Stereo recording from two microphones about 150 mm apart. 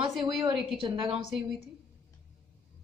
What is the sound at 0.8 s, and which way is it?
Speech, 35° right (ahead or behind).